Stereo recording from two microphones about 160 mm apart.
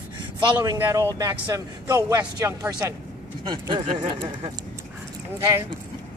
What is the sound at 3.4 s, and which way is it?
Speech, 30° right (ahead or behind).